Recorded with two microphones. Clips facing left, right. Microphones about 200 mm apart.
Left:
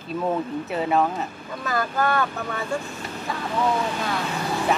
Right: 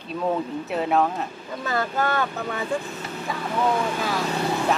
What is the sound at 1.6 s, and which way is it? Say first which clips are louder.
Speech: left 1 dB; 25° right (ahead or behind).